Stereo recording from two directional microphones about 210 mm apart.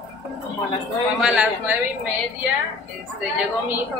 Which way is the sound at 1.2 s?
5° right (ahead or behind).